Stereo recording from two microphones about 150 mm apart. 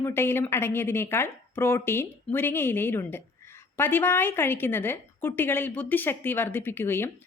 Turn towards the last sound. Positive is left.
turn(degrees=15)  # may be behind; listen again after turning